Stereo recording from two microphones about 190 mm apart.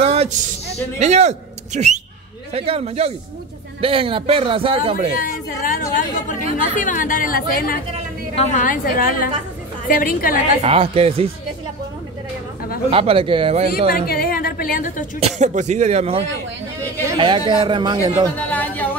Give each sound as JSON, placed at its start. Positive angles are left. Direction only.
{"t": 0.0, "sound": "speech", "side_deg": -35}
{"t": 5.1, "sound": "speech", "side_deg": 45}
{"t": 10.6, "sound": "speech", "side_deg": -30}
{"t": 12.9, "sound": "speech", "side_deg": -30}
{"t": 13.9, "sound": "a woman's voice", "side_deg": 50}
{"t": 15.1, "sound": "speech", "side_deg": -35}
{"t": 18.5, "sound": "a sound", "side_deg": 10}